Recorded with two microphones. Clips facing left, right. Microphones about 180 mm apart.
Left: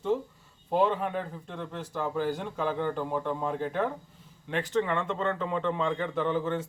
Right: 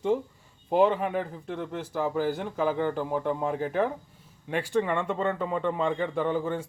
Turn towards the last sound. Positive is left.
turn(degrees=-10)  # may be behind; listen again after turning